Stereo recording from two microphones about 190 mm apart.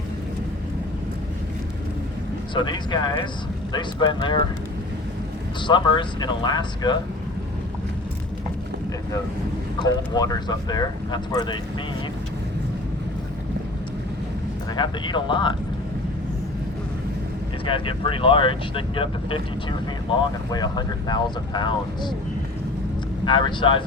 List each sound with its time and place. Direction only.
2.6 s speech: 25° left (ahead or behind)
5.6 s speech: 25° left (ahead or behind)
9.8 s speech: 20° left (ahead or behind)
14.8 s speech: 25° left (ahead or behind)
17.7 s speech: 25° left (ahead or behind)
23.2 s speech: 25° left (ahead or behind)